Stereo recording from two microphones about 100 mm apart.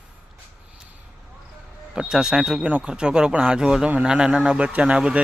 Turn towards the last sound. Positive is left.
turn(degrees=-10)  # may be behind; listen again after turning